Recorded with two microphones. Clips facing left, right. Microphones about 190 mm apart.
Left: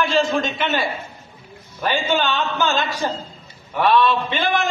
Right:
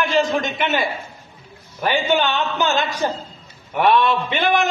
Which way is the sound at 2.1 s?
15° right (ahead or behind).